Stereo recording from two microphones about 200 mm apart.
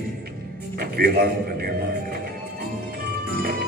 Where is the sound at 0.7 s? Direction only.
50° right (ahead or behind).